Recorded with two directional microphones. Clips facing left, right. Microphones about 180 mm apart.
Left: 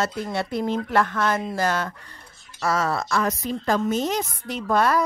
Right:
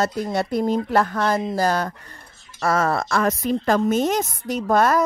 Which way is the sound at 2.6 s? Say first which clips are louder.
Right 3 dB; 55° right (ahead or behind).